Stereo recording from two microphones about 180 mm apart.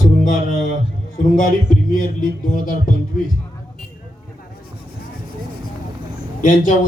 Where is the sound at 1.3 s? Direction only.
45° left (ahead or behind).